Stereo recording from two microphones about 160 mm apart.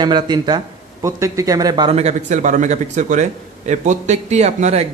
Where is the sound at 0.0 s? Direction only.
25° right (ahead or behind).